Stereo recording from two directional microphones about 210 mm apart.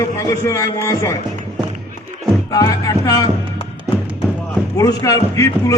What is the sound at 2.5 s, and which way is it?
Speech, 15° left (ahead or behind).